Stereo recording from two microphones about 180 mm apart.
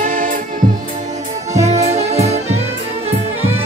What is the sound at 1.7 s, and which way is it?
Music, 35° right (ahead or behind).